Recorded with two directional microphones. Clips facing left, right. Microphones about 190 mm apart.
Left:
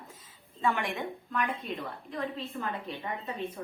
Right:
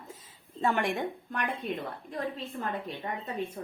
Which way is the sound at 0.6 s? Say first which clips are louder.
Right 2 dB; 45° right (ahead or behind).